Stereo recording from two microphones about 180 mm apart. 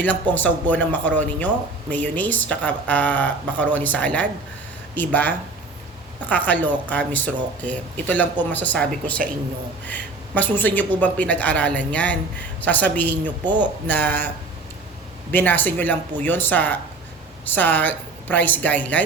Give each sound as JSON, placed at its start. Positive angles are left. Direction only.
{"t": 0.3, "sound": "speech", "side_deg": 10}
{"t": 13.4, "sound": "speech", "side_deg": -25}
{"t": 13.8, "sound": "speech", "side_deg": 10}
{"t": 15.3, "sound": "speech", "side_deg": 10}